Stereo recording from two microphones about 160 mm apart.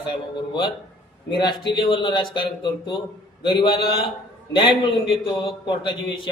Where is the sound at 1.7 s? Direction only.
30° left (ahead or behind).